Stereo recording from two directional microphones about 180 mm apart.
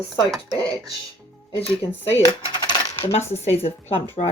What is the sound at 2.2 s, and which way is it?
Coin, 25° left (ahead or behind).